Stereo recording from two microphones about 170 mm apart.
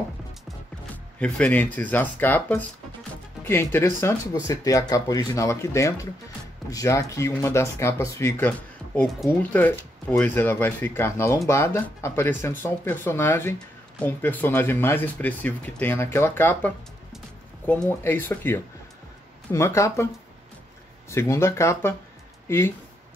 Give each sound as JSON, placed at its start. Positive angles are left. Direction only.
{"t": 1.2, "sound": "speech", "side_deg": 10}
{"t": 21.1, "sound": "speech", "side_deg": 15}